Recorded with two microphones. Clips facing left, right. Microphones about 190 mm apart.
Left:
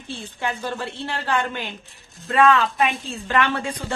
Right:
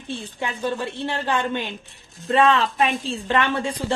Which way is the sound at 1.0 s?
20° right (ahead or behind).